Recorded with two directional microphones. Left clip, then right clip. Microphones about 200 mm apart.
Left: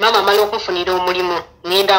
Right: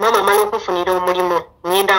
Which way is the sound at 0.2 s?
30° right (ahead or behind).